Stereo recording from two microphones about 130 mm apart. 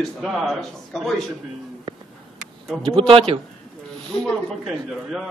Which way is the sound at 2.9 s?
45° right (ahead or behind).